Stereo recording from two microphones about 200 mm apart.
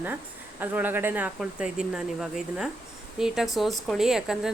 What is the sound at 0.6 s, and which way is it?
Speech, 10° right (ahead or behind).